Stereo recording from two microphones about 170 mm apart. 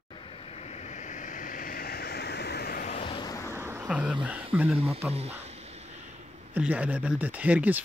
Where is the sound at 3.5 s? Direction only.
15° right (ahead or behind).